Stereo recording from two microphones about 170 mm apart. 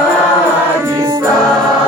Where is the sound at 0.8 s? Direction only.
20° right (ahead or behind).